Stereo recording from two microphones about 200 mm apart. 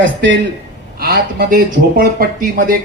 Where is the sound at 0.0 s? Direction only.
65° right (ahead or behind).